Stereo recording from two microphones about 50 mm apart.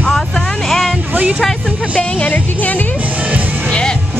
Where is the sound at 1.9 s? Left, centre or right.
Left.